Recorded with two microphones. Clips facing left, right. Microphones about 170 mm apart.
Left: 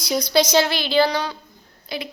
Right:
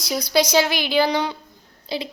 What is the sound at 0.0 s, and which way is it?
A woman's voice, 5° right (ahead or behind).